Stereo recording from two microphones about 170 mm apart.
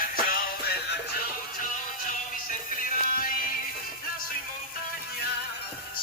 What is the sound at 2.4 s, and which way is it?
Music, 55° left (ahead or behind).